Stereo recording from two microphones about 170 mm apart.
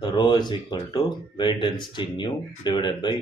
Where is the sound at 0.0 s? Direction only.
25° left (ahead or behind).